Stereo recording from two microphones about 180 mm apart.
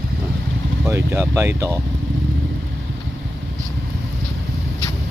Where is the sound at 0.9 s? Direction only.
15° right (ahead or behind).